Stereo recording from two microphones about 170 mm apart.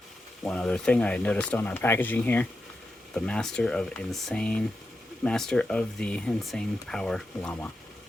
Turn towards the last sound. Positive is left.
turn(degrees=5)  # may be behind; listen again after turning